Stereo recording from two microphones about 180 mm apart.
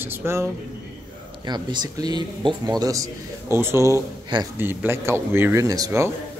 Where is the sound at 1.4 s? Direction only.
25° right (ahead or behind).